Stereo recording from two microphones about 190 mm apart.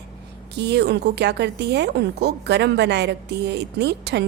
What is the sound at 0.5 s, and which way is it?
Speech, 60° right (ahead or behind).